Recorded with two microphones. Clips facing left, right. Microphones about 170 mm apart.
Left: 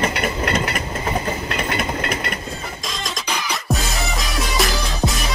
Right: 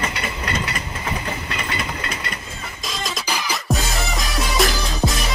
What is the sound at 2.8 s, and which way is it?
Music, 5° right (ahead or behind).